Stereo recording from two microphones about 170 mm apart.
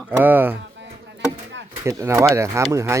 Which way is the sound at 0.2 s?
10° right (ahead or behind).